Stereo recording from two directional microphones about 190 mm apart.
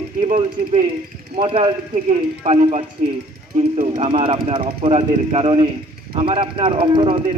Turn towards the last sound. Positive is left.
turn(degrees=-30)  # may be behind; listen again after turning